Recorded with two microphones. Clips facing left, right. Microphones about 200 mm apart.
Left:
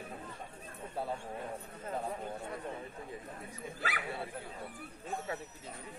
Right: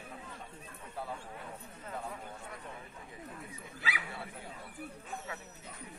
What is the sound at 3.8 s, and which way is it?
Dog, 50° left (ahead or behind).